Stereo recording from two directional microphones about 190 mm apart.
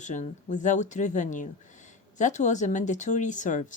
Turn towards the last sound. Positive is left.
turn(degrees=40)  # may be behind; listen again after turning